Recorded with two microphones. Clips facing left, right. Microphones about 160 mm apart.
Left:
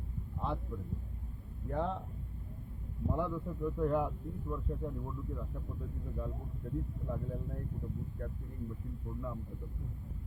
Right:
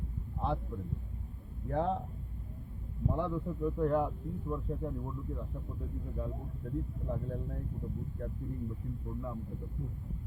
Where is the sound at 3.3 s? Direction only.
15° right (ahead or behind).